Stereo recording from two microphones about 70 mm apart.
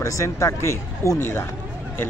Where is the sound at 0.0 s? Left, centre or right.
Left.